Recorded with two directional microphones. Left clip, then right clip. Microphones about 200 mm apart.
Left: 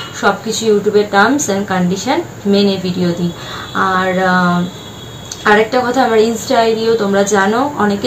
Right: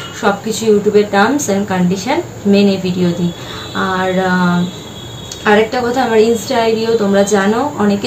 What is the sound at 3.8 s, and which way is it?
Speech, centre (ahead or behind).